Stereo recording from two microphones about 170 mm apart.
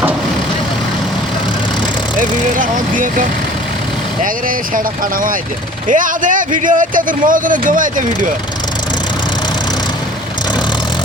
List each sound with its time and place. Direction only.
2.1 s a man's voice: 50° right (ahead or behind)
5.9 s a man's voice: 50° right (ahead or behind)